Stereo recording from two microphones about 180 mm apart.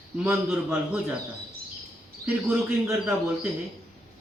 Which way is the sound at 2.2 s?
5° right (ahead or behind).